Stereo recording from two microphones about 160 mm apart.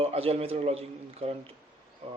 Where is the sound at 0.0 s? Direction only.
40° right (ahead or behind).